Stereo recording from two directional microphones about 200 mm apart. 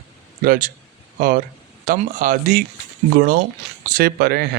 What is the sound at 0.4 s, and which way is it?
Speech, 45° right (ahead or behind).